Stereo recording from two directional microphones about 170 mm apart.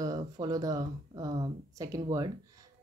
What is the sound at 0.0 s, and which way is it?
Speech, 20° right (ahead or behind).